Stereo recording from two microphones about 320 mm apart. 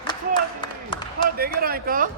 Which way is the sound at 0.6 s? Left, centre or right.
Centre.